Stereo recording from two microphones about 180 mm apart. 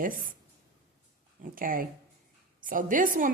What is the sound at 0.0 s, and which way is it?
Speech, 50° right (ahead or behind).